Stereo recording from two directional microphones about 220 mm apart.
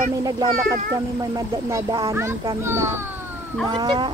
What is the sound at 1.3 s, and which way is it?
Speech, 15° right (ahead or behind).